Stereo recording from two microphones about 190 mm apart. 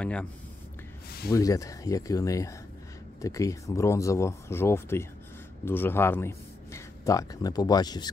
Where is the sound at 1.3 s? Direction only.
20° left (ahead or behind).